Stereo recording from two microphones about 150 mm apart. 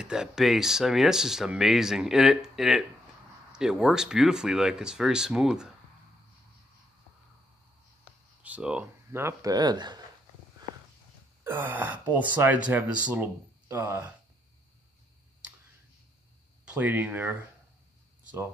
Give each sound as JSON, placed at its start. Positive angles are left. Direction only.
{"t": 0.0, "sound": "speech", "side_deg": -5}
{"t": 8.4, "sound": "speech", "side_deg": -10}
{"t": 11.4, "sound": "speech", "side_deg": -10}
{"t": 16.6, "sound": "speech", "side_deg": -10}